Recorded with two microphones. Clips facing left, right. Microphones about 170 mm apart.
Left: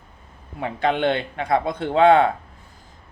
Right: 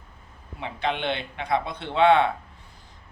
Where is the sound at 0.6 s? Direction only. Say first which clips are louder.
Left 7 dB; 50° left (ahead or behind).